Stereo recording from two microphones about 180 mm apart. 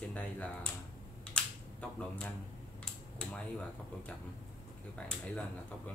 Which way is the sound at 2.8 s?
5° left (ahead or behind).